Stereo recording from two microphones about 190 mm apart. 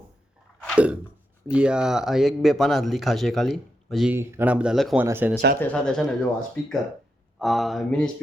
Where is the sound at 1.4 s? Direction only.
5° right (ahead or behind).